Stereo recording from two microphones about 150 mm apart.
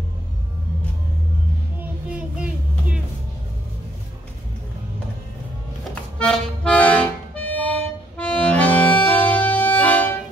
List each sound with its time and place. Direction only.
1.8 s child singing: 5° right (ahead or behind)
6.1 s music: 5° left (ahead or behind)